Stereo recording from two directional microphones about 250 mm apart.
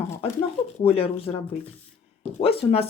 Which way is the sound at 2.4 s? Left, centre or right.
Left.